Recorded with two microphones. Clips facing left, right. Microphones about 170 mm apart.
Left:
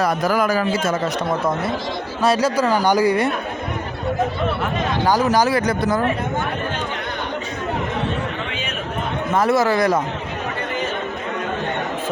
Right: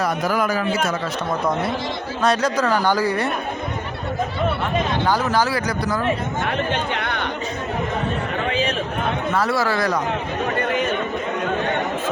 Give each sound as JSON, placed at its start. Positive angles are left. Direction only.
{"t": 0.0, "sound": "a man's voice", "side_deg": 40}
{"t": 2.2, "sound": "speech", "side_deg": 5}
{"t": 5.0, "sound": "speech", "side_deg": 15}
{"t": 6.9, "sound": "chatter", "side_deg": -65}
{"t": 9.3, "sound": "speech", "side_deg": 20}